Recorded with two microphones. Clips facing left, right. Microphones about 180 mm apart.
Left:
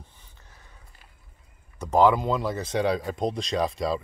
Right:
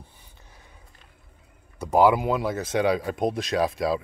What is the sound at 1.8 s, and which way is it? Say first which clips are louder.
Speech: right 1 dB; 10° right (ahead or behind).